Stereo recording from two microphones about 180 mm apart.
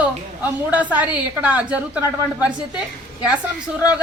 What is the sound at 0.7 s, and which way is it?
A woman's voice, 10° right (ahead or behind).